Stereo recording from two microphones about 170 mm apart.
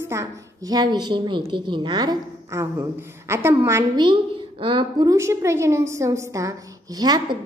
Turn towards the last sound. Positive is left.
turn(degrees=-25)  # may be behind; listen again after turning